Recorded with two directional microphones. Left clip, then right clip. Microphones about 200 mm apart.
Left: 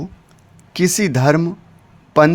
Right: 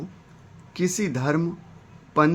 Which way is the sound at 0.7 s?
50° left (ahead or behind).